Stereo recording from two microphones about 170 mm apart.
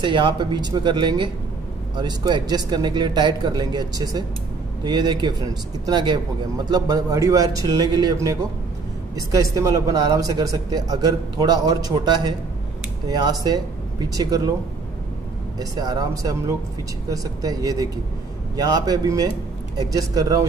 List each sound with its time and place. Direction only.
0.0 s speech: 30° right (ahead or behind)
15.6 s speech: 20° right (ahead or behind)